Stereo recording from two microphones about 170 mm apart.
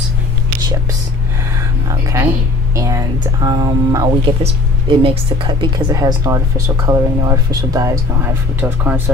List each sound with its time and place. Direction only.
2.7 s speech: 20° right (ahead or behind)
5.9 s speech: 20° right (ahead or behind)